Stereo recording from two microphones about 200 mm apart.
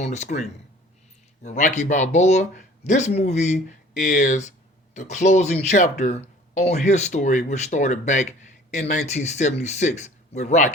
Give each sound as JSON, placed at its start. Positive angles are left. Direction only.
{"t": 0.0, "sound": "speech", "side_deg": 35}